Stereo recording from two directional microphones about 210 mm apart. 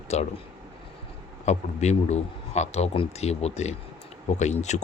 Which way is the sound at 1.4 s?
30° left (ahead or behind).